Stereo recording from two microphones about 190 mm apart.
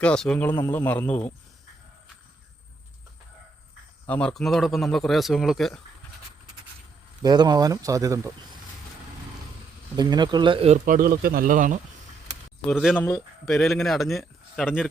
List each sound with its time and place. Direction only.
0.0 s speech: 5° left (ahead or behind)
4.0 s a man's voice: 5° left (ahead or behind)
7.2 s speech: 20° right (ahead or behind)
9.9 s speech: 20° right (ahead or behind)
10.8 s speech: 45° right (ahead or behind)
12.6 s a man's voice: centre (ahead or behind)